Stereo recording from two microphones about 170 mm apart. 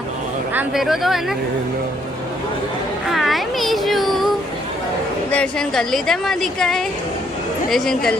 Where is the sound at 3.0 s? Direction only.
Centre (ahead or behind).